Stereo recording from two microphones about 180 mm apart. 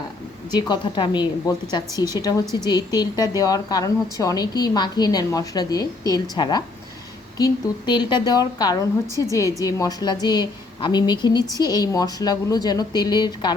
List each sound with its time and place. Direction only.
0.5 s a woman's voice: 25° left (ahead or behind)